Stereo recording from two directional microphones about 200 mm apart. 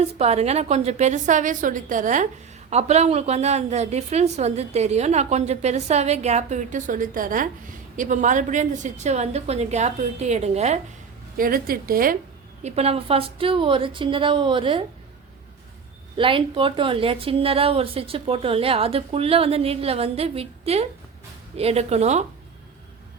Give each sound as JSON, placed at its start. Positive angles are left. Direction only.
{"t": 0.1, "sound": "a woman's voice", "side_deg": -30}
{"t": 11.3, "sound": "a woman's voice", "side_deg": -45}
{"t": 12.6, "sound": "a woman's voice", "side_deg": -30}
{"t": 16.1, "sound": "a woman's voice", "side_deg": -25}